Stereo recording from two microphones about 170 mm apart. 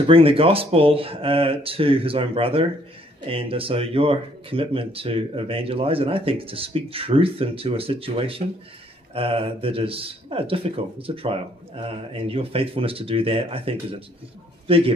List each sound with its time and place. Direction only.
0.0 s speech: 30° right (ahead or behind)